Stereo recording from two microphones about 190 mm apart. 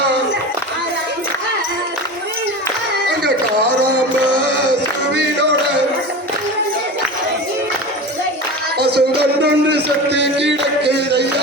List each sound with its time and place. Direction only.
8.8 s music: 60° right (ahead or behind)